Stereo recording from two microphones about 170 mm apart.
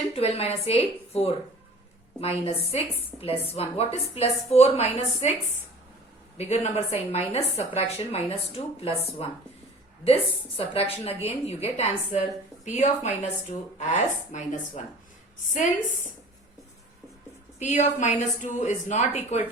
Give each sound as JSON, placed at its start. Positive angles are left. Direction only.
{"t": 0.2, "sound": "speech", "side_deg": 35}
{"t": 6.3, "sound": "speech", "side_deg": 40}
{"t": 17.6, "sound": "speech", "side_deg": 45}